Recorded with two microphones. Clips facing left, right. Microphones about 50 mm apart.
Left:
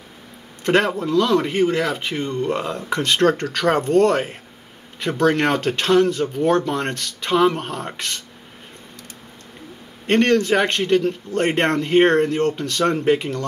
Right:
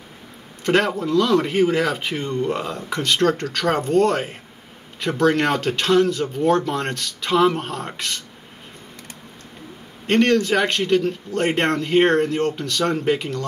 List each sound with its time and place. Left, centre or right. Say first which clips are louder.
0.7 s speech: left 1 dB; centre
3.0 s a man's voice: left 1 dB; centre
10.0 s a man's voice: left 1 dB; centre